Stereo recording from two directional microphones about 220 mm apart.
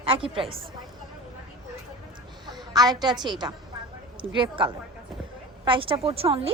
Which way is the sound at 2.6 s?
20° right (ahead or behind).